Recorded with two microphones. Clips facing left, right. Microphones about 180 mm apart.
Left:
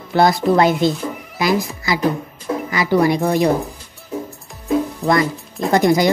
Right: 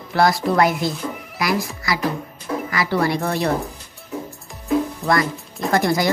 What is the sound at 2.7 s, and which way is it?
Speech, 20° left (ahead or behind).